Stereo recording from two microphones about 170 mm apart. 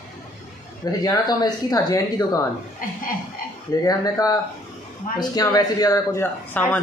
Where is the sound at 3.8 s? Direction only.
20° left (ahead or behind).